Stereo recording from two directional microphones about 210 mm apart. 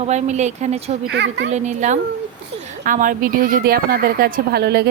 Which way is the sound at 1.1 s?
55° right (ahead or behind).